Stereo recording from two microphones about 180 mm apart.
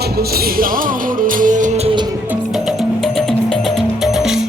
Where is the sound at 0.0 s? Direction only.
55° right (ahead or behind); by 1.9 s 40° right (ahead or behind).